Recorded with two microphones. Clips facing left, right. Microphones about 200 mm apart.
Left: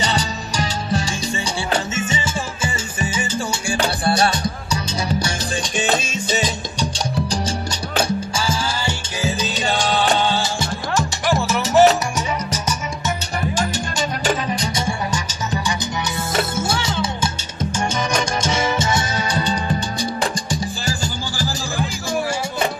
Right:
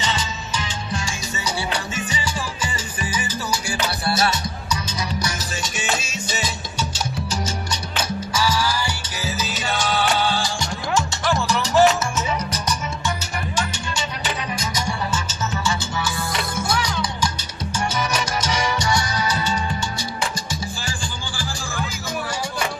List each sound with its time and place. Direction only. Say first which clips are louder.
0.0 s music: left 4 dB; 40° left (ahead or behind)
2.0 s music: left 3 dB; 25° left (ahead or behind)
5.8 s music: left 7 dB; 35° left (ahead or behind)
14.5 s music: left 4 dB; 30° left (ahead or behind)
16.5 s music: left 2 dB; 25° left (ahead or behind)
18.4 s music: left 3 dB; 25° left (ahead or behind)
20.8 s music: left 6 dB; 40° left (ahead or behind)